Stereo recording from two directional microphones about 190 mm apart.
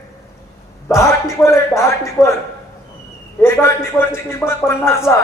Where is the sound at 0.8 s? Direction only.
15° left (ahead or behind).